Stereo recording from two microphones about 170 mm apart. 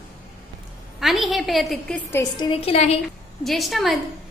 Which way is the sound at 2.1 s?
25° left (ahead or behind).